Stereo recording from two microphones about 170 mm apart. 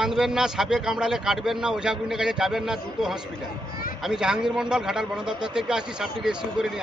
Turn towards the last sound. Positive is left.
turn(degrees=-5)  # may be behind; listen again after turning